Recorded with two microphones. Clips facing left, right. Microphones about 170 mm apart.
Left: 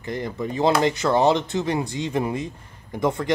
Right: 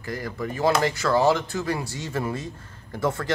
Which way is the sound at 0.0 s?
20° left (ahead or behind).